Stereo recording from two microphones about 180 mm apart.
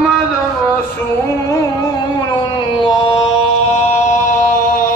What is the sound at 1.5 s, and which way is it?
Music, 20° left (ahead or behind).